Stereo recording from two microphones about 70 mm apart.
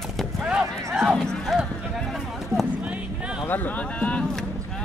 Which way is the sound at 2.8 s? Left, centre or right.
Centre.